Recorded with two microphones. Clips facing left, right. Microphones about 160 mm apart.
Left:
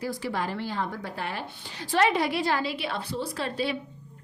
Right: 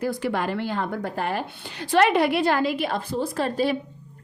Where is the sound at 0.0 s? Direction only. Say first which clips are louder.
Right 5 dB; 60° right (ahead or behind).